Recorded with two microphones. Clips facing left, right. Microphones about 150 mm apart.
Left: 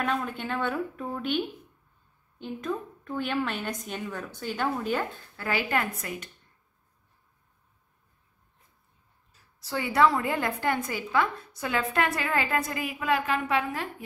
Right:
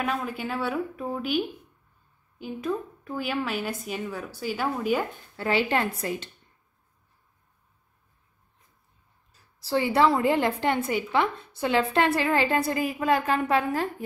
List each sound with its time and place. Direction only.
0.0 s a woman's voice: 5° right (ahead or behind)
5.3 s a woman's voice: 25° right (ahead or behind)
9.3 s a woman's voice: 30° right (ahead or behind)